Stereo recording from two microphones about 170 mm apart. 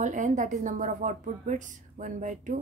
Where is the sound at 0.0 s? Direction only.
45° right (ahead or behind).